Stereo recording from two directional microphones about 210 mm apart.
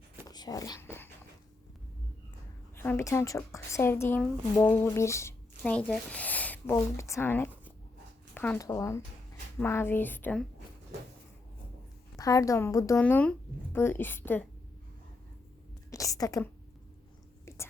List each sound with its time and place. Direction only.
0.3 s a sound: 20° left (ahead or behind)
2.7 s a woman's voice: 10° left (ahead or behind)
12.1 s a woman's voice: 15° left (ahead or behind)
15.9 s a woman's voice: 15° left (ahead or behind)